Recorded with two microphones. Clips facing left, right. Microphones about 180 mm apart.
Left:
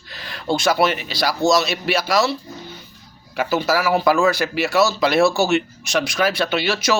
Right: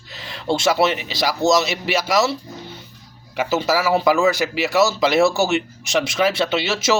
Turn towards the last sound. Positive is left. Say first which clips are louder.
# even
turn(degrees=-25)  # may be behind; listen again after turning